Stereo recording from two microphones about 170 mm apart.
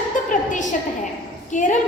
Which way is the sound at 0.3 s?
45° left (ahead or behind).